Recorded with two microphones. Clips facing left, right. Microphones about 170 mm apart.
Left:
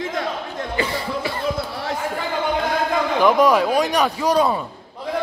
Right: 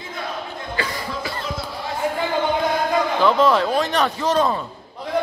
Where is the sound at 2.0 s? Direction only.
20° right (ahead or behind).